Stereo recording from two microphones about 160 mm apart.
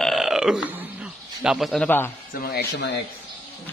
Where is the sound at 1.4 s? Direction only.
Centre (ahead or behind).